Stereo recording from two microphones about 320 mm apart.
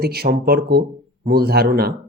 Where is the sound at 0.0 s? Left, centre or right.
Right.